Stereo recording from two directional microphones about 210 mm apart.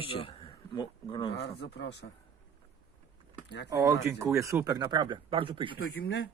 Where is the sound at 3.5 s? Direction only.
55° left (ahead or behind).